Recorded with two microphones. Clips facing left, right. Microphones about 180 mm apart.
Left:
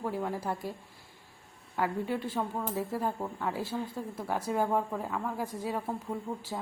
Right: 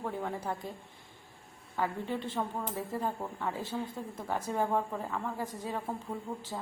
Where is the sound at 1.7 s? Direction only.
10° left (ahead or behind).